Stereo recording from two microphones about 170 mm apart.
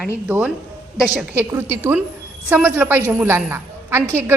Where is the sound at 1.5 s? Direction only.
15° right (ahead or behind).